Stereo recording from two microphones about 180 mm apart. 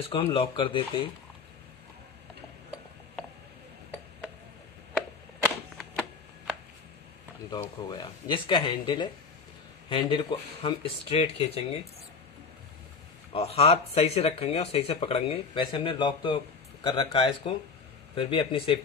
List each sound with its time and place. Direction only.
0.0 s speech: 30° left (ahead or behind)
7.5 s speech: 25° left (ahead or behind)
13.3 s speech: 35° left (ahead or behind)